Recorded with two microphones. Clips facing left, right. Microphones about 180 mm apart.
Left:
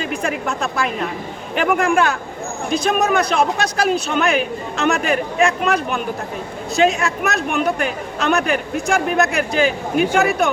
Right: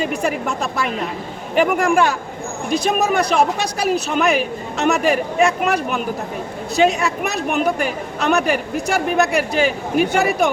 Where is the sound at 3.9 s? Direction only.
5° right (ahead or behind).